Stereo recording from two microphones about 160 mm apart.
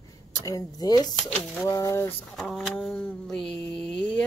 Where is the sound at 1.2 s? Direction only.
5° left (ahead or behind).